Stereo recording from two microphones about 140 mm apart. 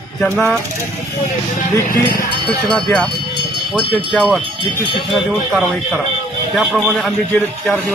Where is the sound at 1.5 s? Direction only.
70° left (ahead or behind).